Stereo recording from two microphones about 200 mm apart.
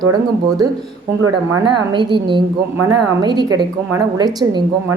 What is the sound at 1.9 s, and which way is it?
A woman's voice, 25° right (ahead or behind).